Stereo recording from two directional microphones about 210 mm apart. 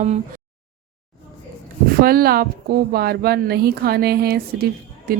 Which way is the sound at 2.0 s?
45° right (ahead or behind).